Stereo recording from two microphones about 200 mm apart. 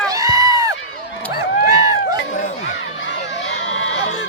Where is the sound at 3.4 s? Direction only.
65° left (ahead or behind).